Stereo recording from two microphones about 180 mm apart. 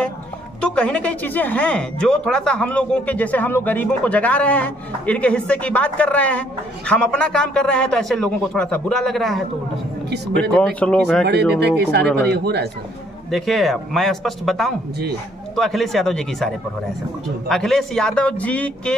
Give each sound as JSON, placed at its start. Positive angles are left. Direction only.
{"t": 0.6, "sound": "a man's voice", "side_deg": 5}
{"t": 10.5, "sound": "a man's voice", "side_deg": 5}
{"t": 11.6, "sound": "speech", "side_deg": -65}
{"t": 13.3, "sound": "a man's voice", "side_deg": 0}